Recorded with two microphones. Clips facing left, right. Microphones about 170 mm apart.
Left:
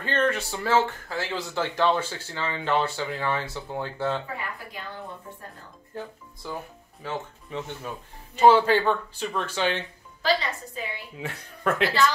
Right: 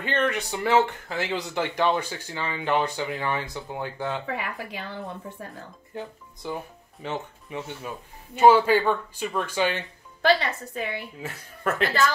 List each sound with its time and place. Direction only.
0.0 s speech: 15° right (ahead or behind)
4.4 s speech: 75° right (ahead or behind)
6.4 s speech: 20° right (ahead or behind)
7.4 s speech: 10° right (ahead or behind)
10.2 s a woman's voice: 60° right (ahead or behind)
11.1 s speech: centre (ahead or behind)